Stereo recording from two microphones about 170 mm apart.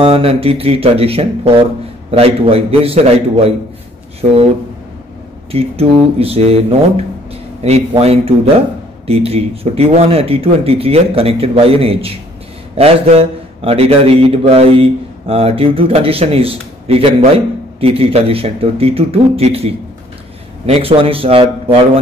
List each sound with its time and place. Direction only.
0.0 s a man's voice: 35° right (ahead or behind)
5.5 s a man's voice: 35° right (ahead or behind)